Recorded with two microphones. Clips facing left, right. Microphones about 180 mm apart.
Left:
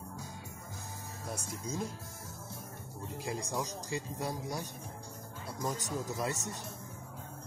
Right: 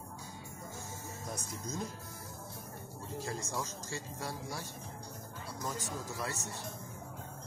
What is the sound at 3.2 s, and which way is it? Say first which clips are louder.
Speech: left 2 dB; 15° left (ahead or behind).